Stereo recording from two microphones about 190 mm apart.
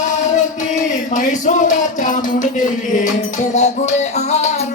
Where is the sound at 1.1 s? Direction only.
40° left (ahead or behind).